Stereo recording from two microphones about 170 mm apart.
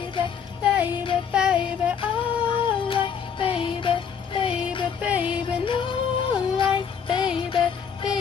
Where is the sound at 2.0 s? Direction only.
30° left (ahead or behind).